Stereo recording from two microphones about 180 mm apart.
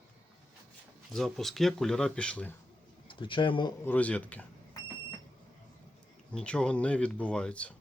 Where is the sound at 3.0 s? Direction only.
30° left (ahead or behind).